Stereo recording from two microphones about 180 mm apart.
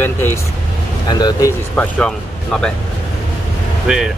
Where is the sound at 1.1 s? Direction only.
25° left (ahead or behind).